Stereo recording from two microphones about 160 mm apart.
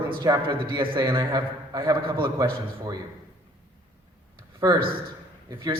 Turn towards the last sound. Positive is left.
turn(degrees=-25)  # may be behind; listen again after turning